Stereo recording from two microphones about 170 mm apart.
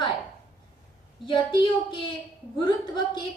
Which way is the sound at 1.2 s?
30° left (ahead or behind).